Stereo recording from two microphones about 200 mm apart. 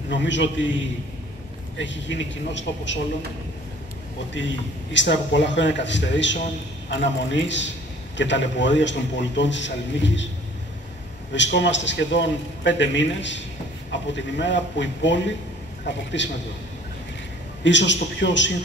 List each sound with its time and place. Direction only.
0.1 s a man's voice: 65° left (ahead or behind)
1.8 s a man's voice: 65° left (ahead or behind)
4.3 s a man's voice: 65° left (ahead or behind)
11.3 s a man's voice: 65° left (ahead or behind)
17.6 s a man's voice: 65° left (ahead or behind)